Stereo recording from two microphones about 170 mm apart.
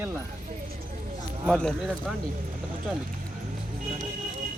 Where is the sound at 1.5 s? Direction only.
5° left (ahead or behind).